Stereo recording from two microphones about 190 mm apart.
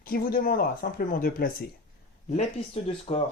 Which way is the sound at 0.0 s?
50° left (ahead or behind).